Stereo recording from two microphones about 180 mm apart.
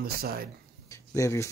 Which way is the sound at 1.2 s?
15° left (ahead or behind).